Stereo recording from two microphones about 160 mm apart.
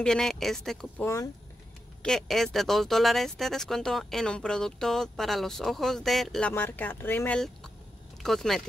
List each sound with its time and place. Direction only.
0.0 s speech: 5° left (ahead or behind)
1.0 s speech: 20° left (ahead or behind)
2.0 s speech: centre (ahead or behind)
6.5 s speech: 10° left (ahead or behind)